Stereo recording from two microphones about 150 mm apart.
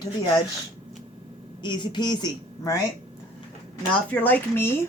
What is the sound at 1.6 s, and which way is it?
A woman's voice, 30° left (ahead or behind).